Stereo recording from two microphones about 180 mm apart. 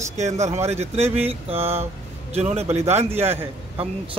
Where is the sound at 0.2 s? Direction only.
40° right (ahead or behind).